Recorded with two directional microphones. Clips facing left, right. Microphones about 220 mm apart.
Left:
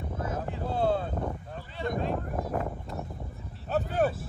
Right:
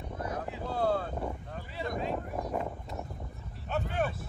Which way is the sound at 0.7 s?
25° left (ahead or behind).